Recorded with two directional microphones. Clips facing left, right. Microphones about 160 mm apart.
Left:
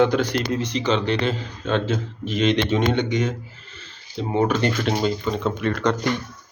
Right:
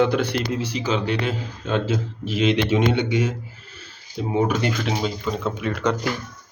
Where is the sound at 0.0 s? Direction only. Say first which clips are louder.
Left 1 dB; 5° right (ahead or behind).